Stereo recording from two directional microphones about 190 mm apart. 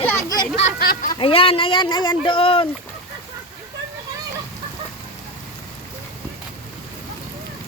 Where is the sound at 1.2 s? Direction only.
30° left (ahead or behind).